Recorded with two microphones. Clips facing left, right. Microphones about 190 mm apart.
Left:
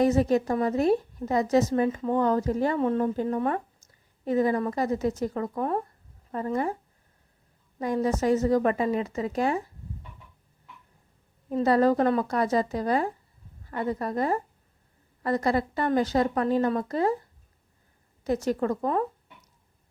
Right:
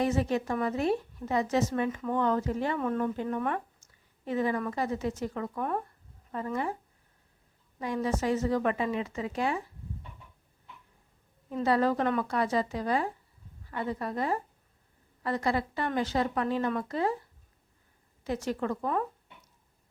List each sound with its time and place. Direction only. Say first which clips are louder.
0.0 s speech: left 6 dB; 40° left (ahead or behind)
6.3 s speech: left 4 dB; 40° left (ahead or behind)
7.8 s speech: left 5 dB; 40° left (ahead or behind)
11.4 s a woman's voice: left 5 dB; 40° left (ahead or behind)
18.2 s speech: left 6 dB; 40° left (ahead or behind)